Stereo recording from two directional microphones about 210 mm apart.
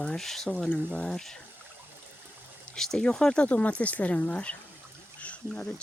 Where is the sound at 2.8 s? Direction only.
5° left (ahead or behind).